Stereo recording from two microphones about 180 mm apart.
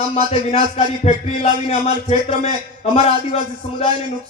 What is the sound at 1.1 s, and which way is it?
A man's voice, 35° left (ahead or behind).